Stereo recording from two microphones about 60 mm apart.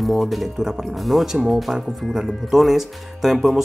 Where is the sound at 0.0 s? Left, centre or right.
Centre.